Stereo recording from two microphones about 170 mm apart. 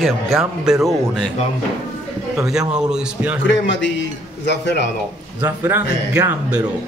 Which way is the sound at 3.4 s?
90° left.